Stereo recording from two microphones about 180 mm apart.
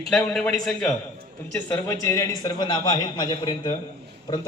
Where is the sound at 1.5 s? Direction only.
15° left (ahead or behind).